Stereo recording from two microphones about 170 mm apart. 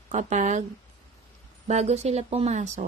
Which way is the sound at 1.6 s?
40° right (ahead or behind).